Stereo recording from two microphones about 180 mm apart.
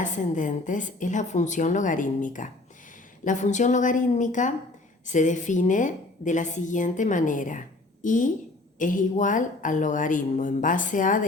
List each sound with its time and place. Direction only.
0.0 s a woman's voice: 45° left (ahead or behind)